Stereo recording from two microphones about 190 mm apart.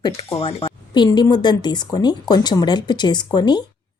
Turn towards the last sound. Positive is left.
turn(degrees=20)  # may be behind; listen again after turning